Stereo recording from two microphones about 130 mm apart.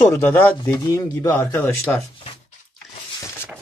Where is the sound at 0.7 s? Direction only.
30° left (ahead or behind).